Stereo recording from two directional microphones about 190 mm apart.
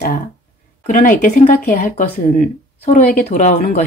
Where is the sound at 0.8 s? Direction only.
45° left (ahead or behind).